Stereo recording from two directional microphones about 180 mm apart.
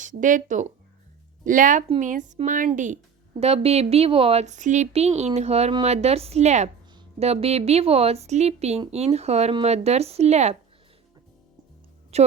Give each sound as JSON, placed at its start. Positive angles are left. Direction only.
{"t": 0.0, "sound": "a woman's voice", "side_deg": -45}
{"t": 12.1, "sound": "speech", "side_deg": -35}